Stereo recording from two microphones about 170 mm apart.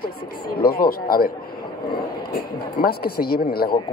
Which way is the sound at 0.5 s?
60° left (ahead or behind).